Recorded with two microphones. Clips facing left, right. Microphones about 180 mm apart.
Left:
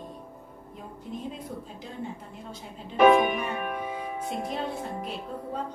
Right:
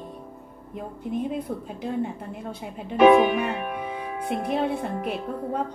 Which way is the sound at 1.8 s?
60° right (ahead or behind).